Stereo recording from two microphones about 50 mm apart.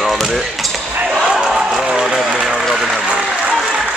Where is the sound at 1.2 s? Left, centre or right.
Centre.